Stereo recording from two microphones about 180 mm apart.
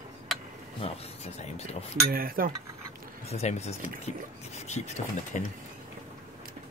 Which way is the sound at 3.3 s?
35° left (ahead or behind).